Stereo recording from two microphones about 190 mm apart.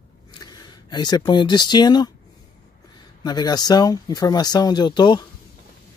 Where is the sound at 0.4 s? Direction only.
20° left (ahead or behind).